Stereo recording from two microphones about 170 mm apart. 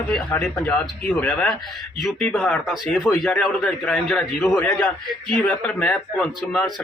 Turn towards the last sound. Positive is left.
turn(degrees=5)  # may be behind; listen again after turning